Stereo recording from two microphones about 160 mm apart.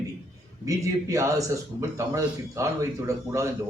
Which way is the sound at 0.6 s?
20° right (ahead or behind).